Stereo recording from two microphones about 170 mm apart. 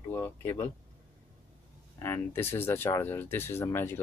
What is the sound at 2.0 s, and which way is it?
Speech, 15° left (ahead or behind).